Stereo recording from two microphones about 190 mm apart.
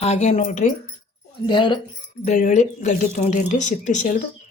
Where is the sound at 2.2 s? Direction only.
40° left (ahead or behind).